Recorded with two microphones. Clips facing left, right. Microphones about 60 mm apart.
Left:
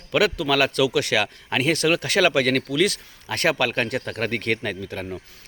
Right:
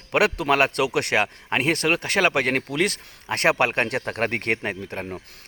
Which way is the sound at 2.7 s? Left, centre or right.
Right.